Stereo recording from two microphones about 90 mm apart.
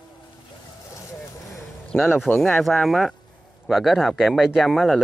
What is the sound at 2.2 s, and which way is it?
Speech, 20° left (ahead or behind).